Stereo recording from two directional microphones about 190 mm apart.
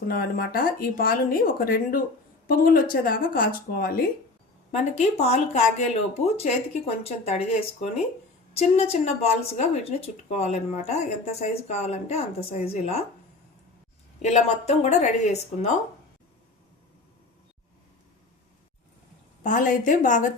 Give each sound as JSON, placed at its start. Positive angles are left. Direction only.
{"t": 0.1, "sound": "speech", "side_deg": 50}
{"t": 4.7, "sound": "speech", "side_deg": 35}
{"t": 14.2, "sound": "speech", "side_deg": 35}
{"t": 19.4, "sound": "speech", "side_deg": 40}